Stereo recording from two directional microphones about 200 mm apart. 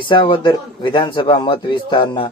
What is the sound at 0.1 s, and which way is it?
A man's voice, 25° left (ahead or behind).